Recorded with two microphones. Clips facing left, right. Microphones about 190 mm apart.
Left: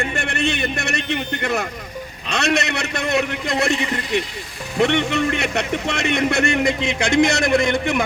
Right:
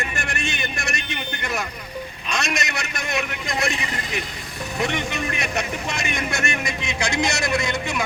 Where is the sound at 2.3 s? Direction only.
65° left (ahead or behind).